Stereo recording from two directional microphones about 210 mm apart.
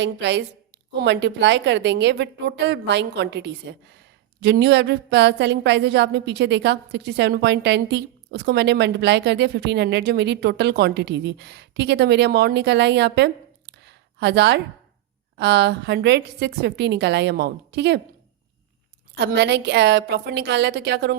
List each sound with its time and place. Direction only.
0.0 s a woman's voice: 55° right (ahead or behind)
19.1 s a woman's voice: 55° right (ahead or behind)